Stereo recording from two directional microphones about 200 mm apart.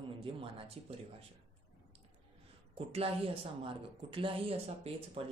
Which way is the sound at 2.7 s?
30° right (ahead or behind).